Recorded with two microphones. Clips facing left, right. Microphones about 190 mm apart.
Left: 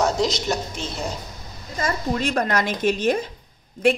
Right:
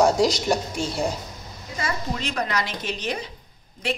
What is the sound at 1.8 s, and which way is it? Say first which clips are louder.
A woman's voice: left 5 dB; 50° left (ahead or behind).